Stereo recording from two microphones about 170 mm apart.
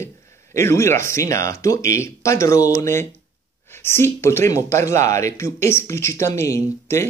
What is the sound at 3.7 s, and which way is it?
Speech, 15° left (ahead or behind).